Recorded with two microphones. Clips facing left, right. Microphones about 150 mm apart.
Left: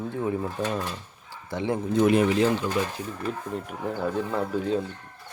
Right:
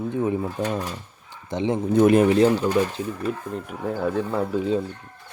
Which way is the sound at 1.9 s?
50° right (ahead or behind).